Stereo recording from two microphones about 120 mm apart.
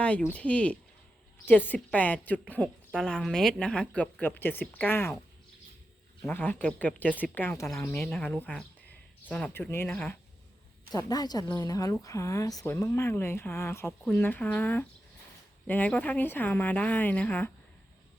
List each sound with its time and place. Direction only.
0.3 s a woman's voice: 10° left (ahead or behind)
6.2 s a woman's voice: 15° left (ahead or behind)
9.5 s speech: 20° left (ahead or behind)
10.9 s a woman's voice: 35° left (ahead or behind); by 17.5 s 10° left (ahead or behind)